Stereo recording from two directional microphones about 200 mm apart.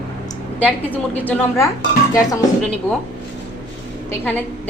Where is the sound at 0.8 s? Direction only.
10° left (ahead or behind).